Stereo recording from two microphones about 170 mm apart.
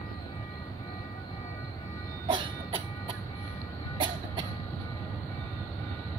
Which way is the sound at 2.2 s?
30° right (ahead or behind).